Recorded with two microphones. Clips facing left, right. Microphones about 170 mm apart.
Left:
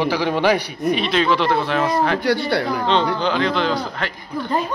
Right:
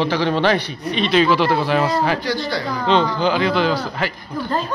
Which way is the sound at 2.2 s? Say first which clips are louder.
Left 4 dB; 60° left (ahead or behind).